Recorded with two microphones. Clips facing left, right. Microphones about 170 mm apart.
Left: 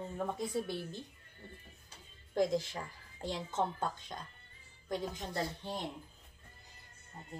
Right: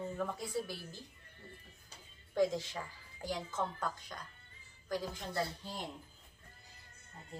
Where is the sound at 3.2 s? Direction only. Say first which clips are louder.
Left 2 dB; 25° left (ahead or behind).